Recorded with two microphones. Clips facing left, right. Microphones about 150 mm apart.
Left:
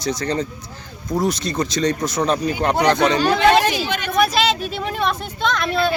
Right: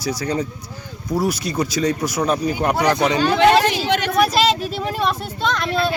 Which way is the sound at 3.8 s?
75° right (ahead or behind).